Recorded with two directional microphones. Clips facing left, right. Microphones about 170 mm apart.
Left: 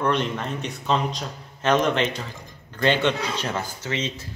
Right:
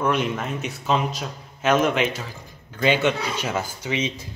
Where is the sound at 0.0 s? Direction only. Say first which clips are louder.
Right 1 dB; 5° right (ahead or behind).